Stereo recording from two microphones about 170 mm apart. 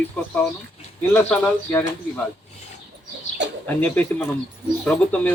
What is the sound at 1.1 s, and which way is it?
Speech, 10° left (ahead or behind).